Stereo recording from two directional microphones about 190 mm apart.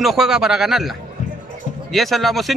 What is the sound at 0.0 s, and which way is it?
A man's voice, centre (ahead or behind).